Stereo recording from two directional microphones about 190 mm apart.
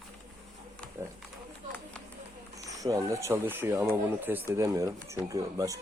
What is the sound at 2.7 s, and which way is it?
Speech, 15° right (ahead or behind).